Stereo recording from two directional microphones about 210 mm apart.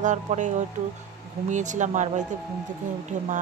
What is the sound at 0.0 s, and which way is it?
Speech, 35° right (ahead or behind).